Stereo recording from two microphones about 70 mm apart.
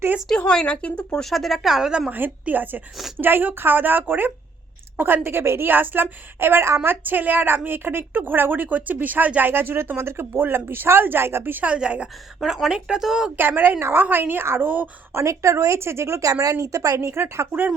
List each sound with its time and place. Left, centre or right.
0.3 s a woman's voice: centre
1.2 s a woman's voice: centre
2.0 s a woman's voice: right
12.4 s speech: centre
13.3 s a woman's voice: right
15.1 s speech: right
17.1 s speech: right